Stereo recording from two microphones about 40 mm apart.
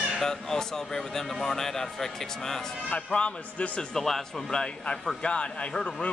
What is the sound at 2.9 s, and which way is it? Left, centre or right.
Speech, left.